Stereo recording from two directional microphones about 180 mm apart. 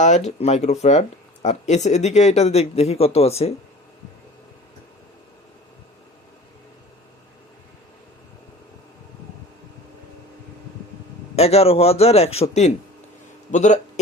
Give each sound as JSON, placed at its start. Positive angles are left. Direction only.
{"t": 0.3, "sound": "speech", "side_deg": 35}
{"t": 11.3, "sound": "speech", "side_deg": 35}